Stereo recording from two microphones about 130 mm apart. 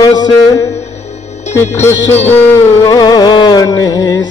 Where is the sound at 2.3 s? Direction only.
15° left (ahead or behind).